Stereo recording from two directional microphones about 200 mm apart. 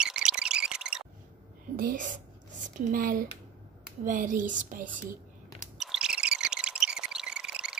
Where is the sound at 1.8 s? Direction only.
45° right (ahead or behind).